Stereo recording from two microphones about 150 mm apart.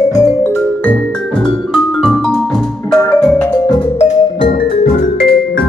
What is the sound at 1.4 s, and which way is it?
Music, centre (ahead or behind).